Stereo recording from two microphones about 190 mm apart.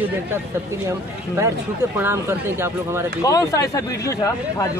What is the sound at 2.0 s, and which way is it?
A man's voice, 10° right (ahead or behind).